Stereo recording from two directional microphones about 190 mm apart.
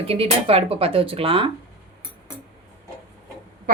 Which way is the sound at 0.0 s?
30° right (ahead or behind).